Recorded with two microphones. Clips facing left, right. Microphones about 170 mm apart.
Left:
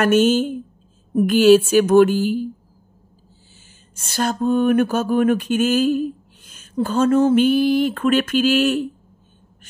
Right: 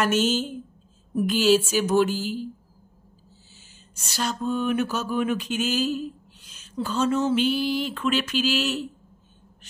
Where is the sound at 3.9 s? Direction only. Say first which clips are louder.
Left 7 dB; 50° left (ahead or behind).